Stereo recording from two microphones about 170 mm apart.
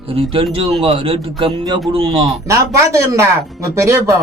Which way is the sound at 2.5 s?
15° right (ahead or behind).